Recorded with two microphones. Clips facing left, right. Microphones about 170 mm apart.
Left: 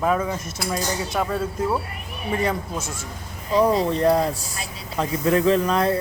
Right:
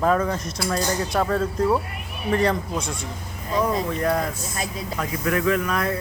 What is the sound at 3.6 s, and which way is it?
Speech, 30° left (ahead or behind).